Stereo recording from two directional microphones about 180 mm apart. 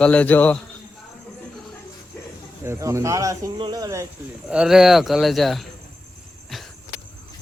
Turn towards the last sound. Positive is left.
turn(degrees=0)  # may be behind; listen again after turning